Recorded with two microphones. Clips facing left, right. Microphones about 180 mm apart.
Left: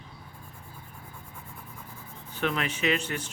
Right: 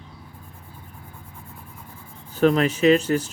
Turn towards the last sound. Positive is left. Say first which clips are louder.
# right 11 dB
turn(degrees=-40)  # may be behind; listen again after turning